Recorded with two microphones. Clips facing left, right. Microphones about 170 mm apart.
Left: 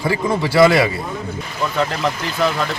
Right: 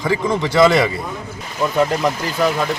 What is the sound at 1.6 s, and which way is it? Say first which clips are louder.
Speech: right 3 dB; 10° right (ahead or behind).